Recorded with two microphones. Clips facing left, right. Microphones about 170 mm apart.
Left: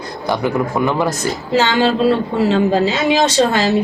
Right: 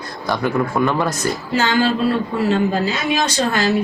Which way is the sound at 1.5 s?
25° left (ahead or behind).